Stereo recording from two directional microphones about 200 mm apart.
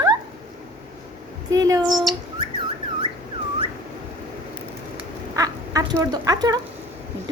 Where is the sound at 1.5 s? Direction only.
15° right (ahead or behind).